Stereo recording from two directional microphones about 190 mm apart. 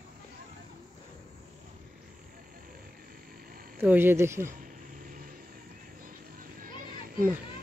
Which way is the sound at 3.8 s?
10° right (ahead or behind).